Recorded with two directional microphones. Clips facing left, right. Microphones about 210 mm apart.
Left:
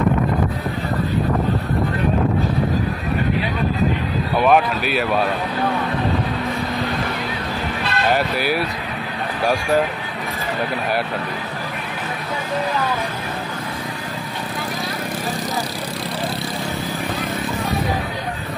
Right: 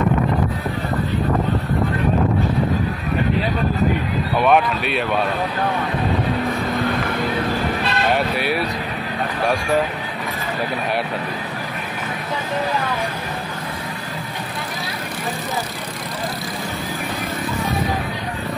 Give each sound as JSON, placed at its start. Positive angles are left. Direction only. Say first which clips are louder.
{"t": 4.4, "sound": "speech", "louder": "left 1 dB", "side_deg": 0}
{"t": 8.1, "sound": "speech", "louder": "left 2 dB", "side_deg": 0}